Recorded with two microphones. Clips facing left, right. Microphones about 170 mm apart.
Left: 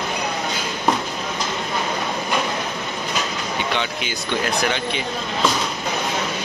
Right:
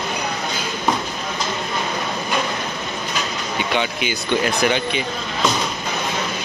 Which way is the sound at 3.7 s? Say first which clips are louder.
Right 3 dB; 5° right (ahead or behind).